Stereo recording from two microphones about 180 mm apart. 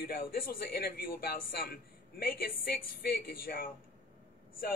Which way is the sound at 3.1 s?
55° left (ahead or behind).